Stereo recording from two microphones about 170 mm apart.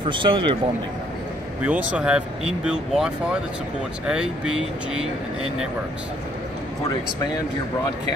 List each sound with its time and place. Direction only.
0.0 s a man's voice: 30° right (ahead or behind)
1.6 s speech: 10° right (ahead or behind)